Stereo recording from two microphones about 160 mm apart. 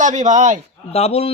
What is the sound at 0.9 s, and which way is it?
Speech, 40° left (ahead or behind).